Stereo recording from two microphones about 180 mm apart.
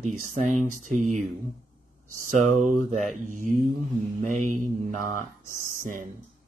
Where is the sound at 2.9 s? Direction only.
40° right (ahead or behind).